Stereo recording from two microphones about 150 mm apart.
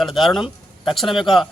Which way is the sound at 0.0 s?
Centre (ahead or behind).